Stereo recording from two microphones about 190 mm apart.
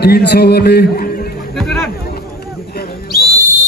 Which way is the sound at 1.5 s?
Centre (ahead or behind).